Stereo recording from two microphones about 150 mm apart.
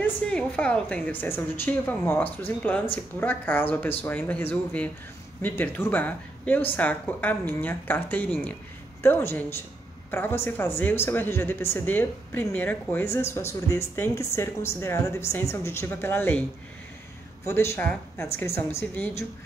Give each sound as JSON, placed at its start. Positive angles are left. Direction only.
{"t": 0.0, "sound": "a woman's voice", "side_deg": 5}
{"t": 17.5, "sound": "speech", "side_deg": 15}